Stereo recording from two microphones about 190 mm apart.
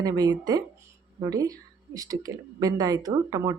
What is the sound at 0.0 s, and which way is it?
Speech, 20° right (ahead or behind).